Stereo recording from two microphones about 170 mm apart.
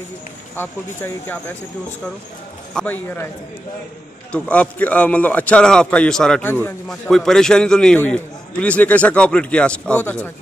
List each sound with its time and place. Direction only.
0.6 s a man's voice: 15° left (ahead or behind)
2.7 s a man's voice: 10° left (ahead or behind)
4.3 s a man's voice: 10° left (ahead or behind)